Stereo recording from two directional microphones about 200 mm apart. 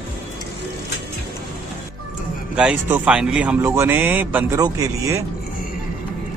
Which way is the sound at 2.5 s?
5° right (ahead or behind).